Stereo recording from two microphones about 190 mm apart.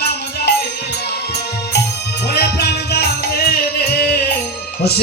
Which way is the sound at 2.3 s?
60° left (ahead or behind).